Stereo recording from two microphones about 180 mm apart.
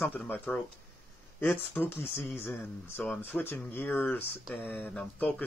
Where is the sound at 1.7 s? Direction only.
10° left (ahead or behind).